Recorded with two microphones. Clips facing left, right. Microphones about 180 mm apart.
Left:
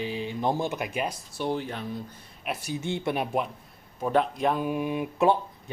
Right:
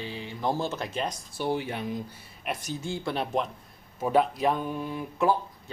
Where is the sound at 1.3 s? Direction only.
5° right (ahead or behind).